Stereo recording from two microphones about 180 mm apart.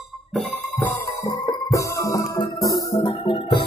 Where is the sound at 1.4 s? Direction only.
20° left (ahead or behind).